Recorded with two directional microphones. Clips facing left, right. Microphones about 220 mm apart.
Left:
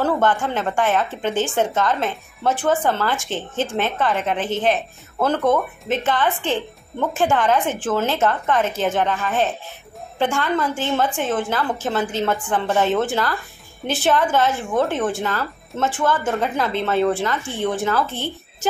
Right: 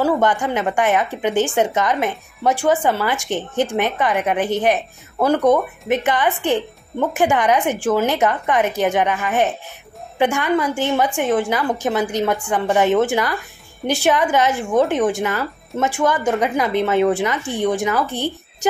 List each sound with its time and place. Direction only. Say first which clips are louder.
0.0 s speech: right 2 dB; 15° right (ahead or behind)